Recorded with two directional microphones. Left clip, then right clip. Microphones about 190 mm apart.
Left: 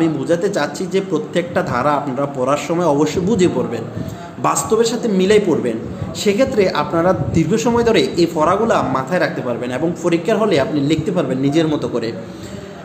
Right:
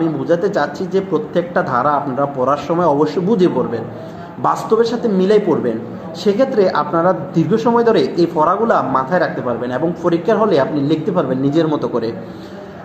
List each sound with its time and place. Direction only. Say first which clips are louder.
0.0 s a man's voice: right 1 dB; 10° left (ahead or behind)